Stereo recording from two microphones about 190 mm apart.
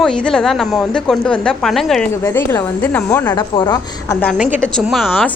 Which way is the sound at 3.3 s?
25° left (ahead or behind).